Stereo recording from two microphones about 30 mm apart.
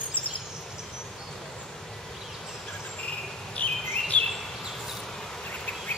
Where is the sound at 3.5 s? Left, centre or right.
Left.